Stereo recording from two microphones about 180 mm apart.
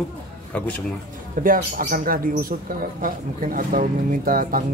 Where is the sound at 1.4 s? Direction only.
50° right (ahead or behind).